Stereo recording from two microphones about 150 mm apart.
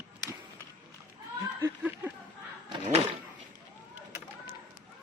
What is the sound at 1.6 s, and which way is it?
Snicker, 15° right (ahead or behind).